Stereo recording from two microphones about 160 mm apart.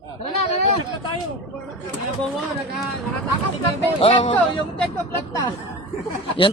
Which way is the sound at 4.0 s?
35° left (ahead or behind).